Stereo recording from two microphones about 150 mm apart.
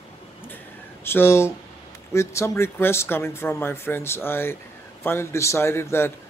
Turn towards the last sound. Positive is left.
turn(degrees=15)  # may be behind; listen again after turning